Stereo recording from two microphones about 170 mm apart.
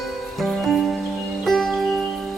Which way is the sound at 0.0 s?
Centre (ahead or behind).